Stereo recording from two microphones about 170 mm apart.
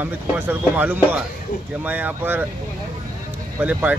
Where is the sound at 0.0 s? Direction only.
10° right (ahead or behind).